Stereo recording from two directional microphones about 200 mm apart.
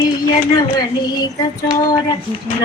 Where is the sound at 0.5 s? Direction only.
20° left (ahead or behind).